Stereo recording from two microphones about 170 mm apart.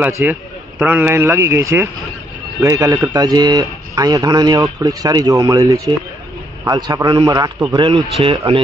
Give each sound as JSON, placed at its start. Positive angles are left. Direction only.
{"t": 0.0, "sound": "a man's voice", "side_deg": -10}